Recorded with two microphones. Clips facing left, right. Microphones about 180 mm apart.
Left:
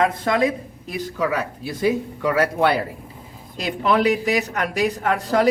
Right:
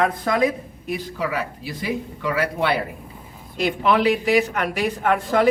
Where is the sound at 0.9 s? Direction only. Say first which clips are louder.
Left 2 dB; 45° left (ahead or behind).